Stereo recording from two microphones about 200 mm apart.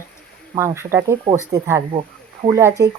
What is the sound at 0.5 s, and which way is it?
Speech, 15° right (ahead or behind).